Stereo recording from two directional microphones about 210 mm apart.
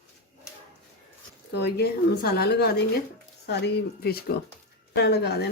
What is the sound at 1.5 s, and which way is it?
Speech, 50° left (ahead or behind).